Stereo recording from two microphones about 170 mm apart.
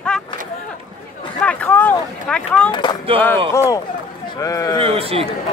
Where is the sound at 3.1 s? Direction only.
30° right (ahead or behind).